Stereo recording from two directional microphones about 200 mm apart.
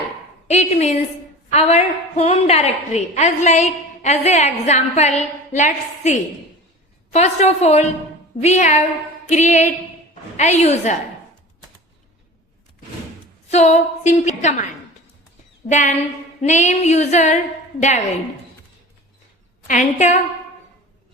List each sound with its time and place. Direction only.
0.4 s a woman's voice: 35° left (ahead or behind)
13.5 s a woman's voice: 35° left (ahead or behind)
16.4 s a woman's voice: 35° left (ahead or behind)
19.6 s a woman's voice: 40° left (ahead or behind)